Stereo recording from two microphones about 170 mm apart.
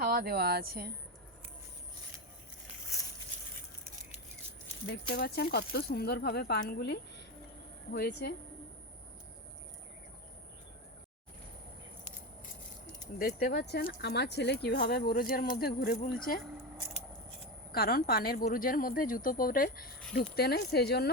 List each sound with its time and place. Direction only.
0.0 s speech: 65° right (ahead or behind)
5.0 s speech: 65° left (ahead or behind)
13.1 s a woman's voice: 65° left (ahead or behind)
17.7 s a woman's voice: 60° left (ahead or behind)